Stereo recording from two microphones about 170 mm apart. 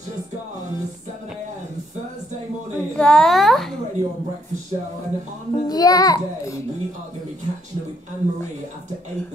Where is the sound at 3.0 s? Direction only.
5° left (ahead or behind).